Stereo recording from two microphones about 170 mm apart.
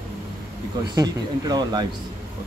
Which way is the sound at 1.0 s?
25° right (ahead or behind).